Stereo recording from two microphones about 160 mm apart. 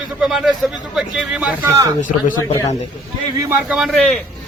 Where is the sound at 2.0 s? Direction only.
55° left (ahead or behind).